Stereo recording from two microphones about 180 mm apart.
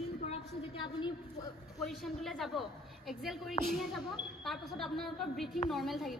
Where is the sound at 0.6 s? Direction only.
30° left (ahead or behind).